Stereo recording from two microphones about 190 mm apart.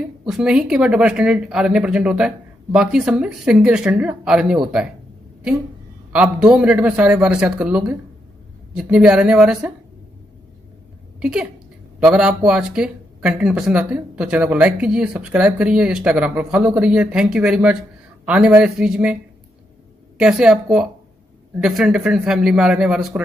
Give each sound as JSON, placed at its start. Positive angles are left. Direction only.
{"t": 0.3, "sound": "speech", "side_deg": -5}
{"t": 6.1, "sound": "speech", "side_deg": -5}
{"t": 11.1, "sound": "speech", "side_deg": -5}
{"t": 20.2, "sound": "speech", "side_deg": -5}